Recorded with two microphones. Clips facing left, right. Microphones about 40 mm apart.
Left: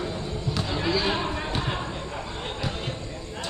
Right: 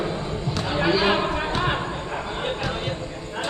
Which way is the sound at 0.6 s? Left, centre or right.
Right.